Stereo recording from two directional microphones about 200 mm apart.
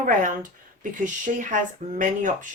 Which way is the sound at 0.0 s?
45° right (ahead or behind).